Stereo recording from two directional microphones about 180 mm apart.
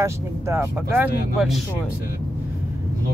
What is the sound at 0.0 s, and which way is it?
Speech, 15° right (ahead or behind).